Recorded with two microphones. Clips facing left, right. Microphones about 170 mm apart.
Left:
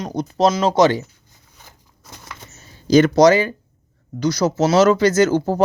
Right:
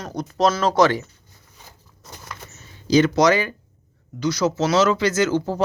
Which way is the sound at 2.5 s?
50° left (ahead or behind).